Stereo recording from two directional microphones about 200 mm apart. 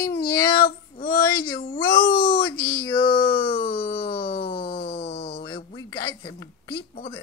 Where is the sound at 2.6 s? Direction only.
25° left (ahead or behind).